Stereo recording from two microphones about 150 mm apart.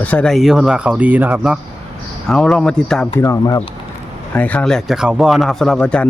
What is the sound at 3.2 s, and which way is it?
Speech, 20° left (ahead or behind).